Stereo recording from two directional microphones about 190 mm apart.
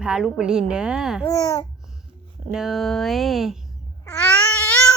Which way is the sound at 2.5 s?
Centre (ahead or behind).